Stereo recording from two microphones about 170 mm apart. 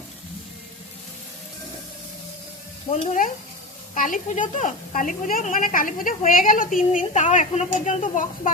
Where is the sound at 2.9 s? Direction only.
45° left (ahead or behind).